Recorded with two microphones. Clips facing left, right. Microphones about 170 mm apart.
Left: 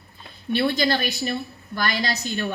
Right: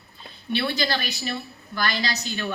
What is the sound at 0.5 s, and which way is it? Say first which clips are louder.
A woman's voice: left 4 dB; 50° left (ahead or behind).